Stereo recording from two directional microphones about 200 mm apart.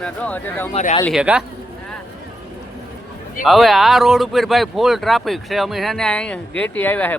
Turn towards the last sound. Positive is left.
turn(degrees=10)  # may be behind; listen again after turning